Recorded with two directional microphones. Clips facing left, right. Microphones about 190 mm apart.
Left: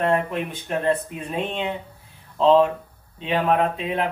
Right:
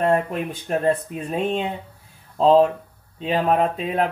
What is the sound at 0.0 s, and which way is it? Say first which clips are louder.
Speech: right 2 dB; 40° right (ahead or behind).